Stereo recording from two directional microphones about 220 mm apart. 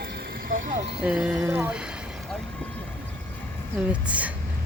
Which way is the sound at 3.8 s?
5° right (ahead or behind).